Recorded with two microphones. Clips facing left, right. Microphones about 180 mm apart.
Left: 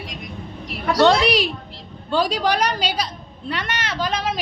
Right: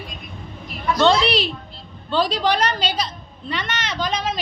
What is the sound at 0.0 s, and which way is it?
Vehicle, 85° left.